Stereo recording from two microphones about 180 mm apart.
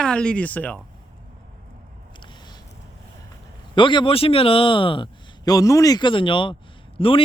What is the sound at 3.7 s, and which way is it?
A man's voice, 25° left (ahead or behind).